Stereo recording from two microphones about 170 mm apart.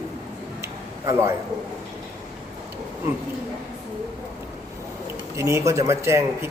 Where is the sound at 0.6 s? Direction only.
15° right (ahead or behind).